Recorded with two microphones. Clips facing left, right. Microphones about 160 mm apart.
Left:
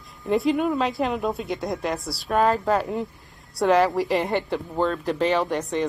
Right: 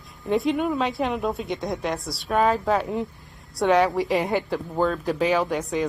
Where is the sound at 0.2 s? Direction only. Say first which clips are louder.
Left 1 dB; centre (ahead or behind).